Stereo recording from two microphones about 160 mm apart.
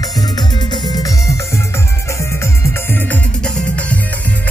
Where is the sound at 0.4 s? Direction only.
25° left (ahead or behind); by 4.0 s 10° left (ahead or behind).